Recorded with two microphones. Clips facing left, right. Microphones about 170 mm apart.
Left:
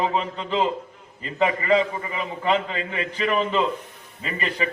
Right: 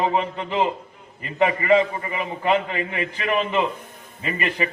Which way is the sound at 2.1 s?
15° right (ahead or behind).